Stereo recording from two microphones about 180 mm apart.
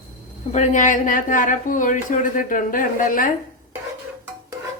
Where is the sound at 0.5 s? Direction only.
45° left (ahead or behind).